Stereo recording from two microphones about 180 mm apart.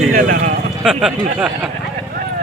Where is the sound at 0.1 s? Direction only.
50° right (ahead or behind).